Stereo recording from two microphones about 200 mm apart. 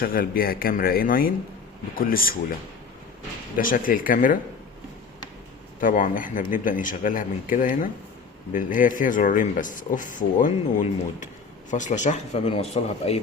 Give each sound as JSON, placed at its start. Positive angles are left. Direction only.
{"t": 0.0, "sound": "speech", "side_deg": 45}
{"t": 3.6, "sound": "speech", "side_deg": 45}
{"t": 5.8, "sound": "a man's voice", "side_deg": 40}